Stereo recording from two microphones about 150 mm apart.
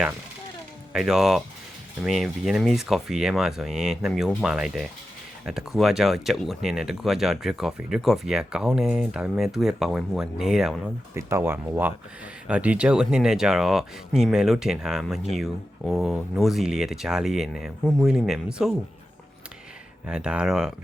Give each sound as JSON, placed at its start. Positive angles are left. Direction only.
{"t": 0.9, "sound": "speech", "side_deg": -5}
{"t": 11.1, "sound": "speech", "side_deg": -15}
{"t": 20.1, "sound": "speech", "side_deg": -5}